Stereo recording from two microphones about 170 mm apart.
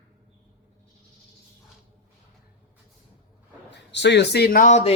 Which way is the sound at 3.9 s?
90° left.